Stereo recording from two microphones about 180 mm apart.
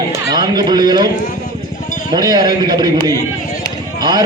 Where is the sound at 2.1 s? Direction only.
20° right (ahead or behind).